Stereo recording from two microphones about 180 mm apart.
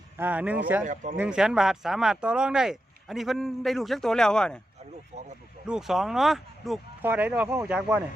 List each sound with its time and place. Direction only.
0.2 s speech: 10° right (ahead or behind)
5.1 s speech: 40° right (ahead or behind)
5.6 s speech: 5° right (ahead or behind)